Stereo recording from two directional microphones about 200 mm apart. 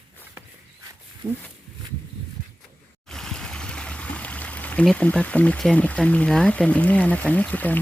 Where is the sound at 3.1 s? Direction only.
5° left (ahead or behind).